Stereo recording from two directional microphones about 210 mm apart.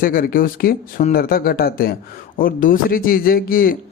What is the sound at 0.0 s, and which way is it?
Speech, 45° left (ahead or behind).